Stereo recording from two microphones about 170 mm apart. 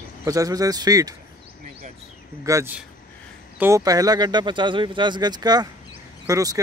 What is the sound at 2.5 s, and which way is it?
Speech, 20° right (ahead or behind).